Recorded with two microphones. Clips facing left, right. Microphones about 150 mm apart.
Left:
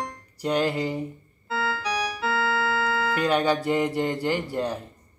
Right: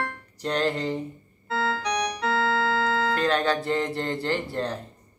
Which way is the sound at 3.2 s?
10° left (ahead or behind).